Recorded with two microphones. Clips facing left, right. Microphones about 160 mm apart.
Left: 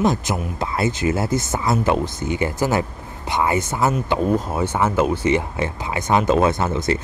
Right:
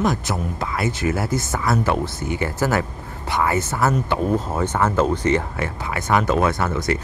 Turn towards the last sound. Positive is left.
turn(degrees=25)  # may be behind; listen again after turning